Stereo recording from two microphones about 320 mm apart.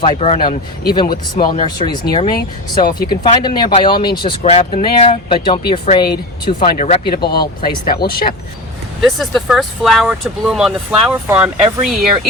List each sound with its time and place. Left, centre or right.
0.0 s speech: centre
7.2 s speech: left
9.0 s speech: centre